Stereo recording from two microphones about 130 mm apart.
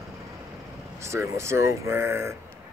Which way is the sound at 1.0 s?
20° right (ahead or behind).